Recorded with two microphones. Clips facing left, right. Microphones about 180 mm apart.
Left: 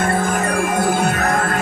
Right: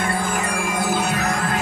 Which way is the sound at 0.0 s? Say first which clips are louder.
Left 5 dB; 45° left (ahead or behind).